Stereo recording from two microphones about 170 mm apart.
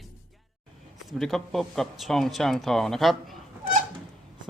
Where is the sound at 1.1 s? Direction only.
Centre (ahead or behind).